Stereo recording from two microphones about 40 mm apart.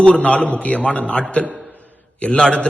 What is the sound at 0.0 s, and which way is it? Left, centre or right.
A man's voice, left.